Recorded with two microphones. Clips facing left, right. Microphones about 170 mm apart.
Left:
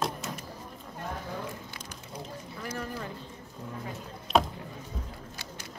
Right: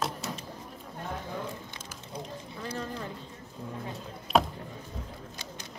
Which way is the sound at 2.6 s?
20° right (ahead or behind).